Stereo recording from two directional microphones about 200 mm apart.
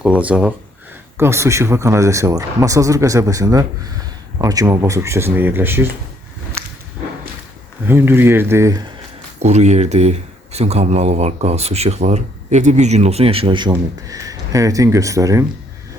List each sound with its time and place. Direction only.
0.0 s speech: 5° right (ahead or behind)
7.9 s speech: 10° right (ahead or behind)
9.4 s speech: 35° right (ahead or behind); by 15.4 s 15° right (ahead or behind)